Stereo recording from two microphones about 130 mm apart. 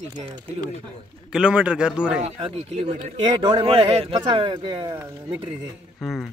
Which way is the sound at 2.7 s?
45° right (ahead or behind).